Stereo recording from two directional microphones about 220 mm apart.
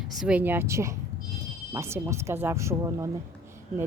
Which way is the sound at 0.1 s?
5° right (ahead or behind).